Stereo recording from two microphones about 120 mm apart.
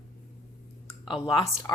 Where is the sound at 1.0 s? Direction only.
40° left (ahead or behind).